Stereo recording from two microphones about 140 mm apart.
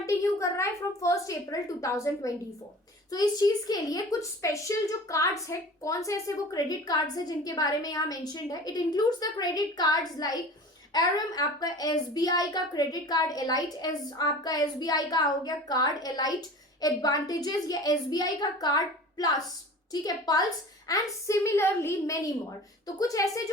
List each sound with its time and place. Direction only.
0.0 s a child's voice: 20° left (ahead or behind)